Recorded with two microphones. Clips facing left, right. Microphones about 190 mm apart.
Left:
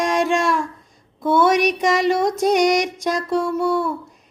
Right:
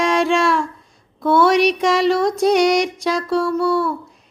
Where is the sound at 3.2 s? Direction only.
20° left (ahead or behind).